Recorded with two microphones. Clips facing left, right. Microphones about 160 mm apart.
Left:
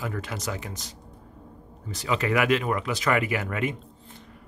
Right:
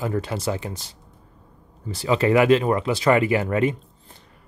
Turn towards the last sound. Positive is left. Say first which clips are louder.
# right 7 dB
turn(degrees=-35)  # may be behind; listen again after turning